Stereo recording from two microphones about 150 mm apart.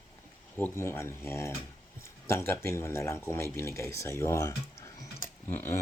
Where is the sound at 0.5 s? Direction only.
15° left (ahead or behind).